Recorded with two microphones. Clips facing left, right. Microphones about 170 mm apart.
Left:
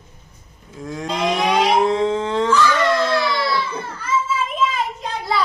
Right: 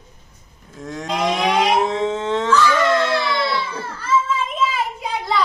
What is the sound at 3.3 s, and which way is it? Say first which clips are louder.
Baby cry: even; 25° right (ahead or behind).